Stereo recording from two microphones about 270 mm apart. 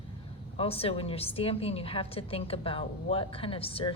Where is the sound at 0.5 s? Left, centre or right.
Left.